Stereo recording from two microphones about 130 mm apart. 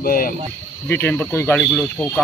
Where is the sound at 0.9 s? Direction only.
15° left (ahead or behind).